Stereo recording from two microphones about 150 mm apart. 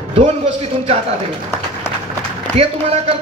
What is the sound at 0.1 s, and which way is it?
Speech, 40° right (ahead or behind).